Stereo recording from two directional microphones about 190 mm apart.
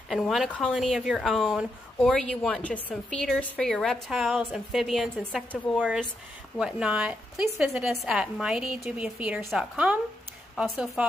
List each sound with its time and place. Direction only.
0.1 s speech: centre (ahead or behind)